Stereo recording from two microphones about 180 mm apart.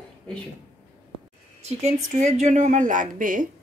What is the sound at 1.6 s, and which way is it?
A woman's voice, 35° right (ahead or behind).